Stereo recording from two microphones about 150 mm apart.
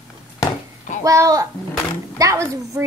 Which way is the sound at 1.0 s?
20° right (ahead or behind).